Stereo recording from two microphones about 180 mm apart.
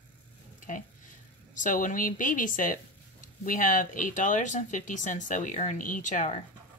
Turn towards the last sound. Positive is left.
turn(degrees=45)  # may be behind; listen again after turning